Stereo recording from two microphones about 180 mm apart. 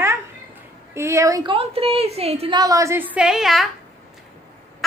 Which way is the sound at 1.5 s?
30° right (ahead or behind).